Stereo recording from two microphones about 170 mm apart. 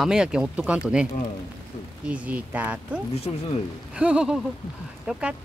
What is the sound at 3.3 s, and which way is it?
Speech, 35° left (ahead or behind).